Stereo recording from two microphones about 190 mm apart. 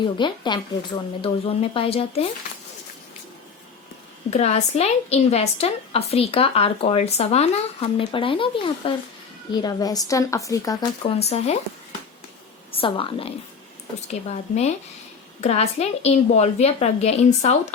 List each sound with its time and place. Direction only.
0.0 s speech: 25° left (ahead or behind)
4.3 s a woman's voice: 35° left (ahead or behind); by 10.8 s 15° left (ahead or behind)
11.0 s a woman's voice: 35° left (ahead or behind)
12.7 s a woman's voice: 30° left (ahead or behind)